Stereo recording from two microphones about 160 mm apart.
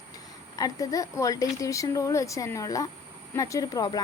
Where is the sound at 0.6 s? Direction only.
20° left (ahead or behind).